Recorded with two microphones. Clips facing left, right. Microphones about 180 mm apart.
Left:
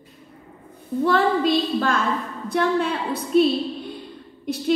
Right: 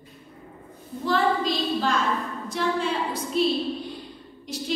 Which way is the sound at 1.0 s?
60° left (ahead or behind).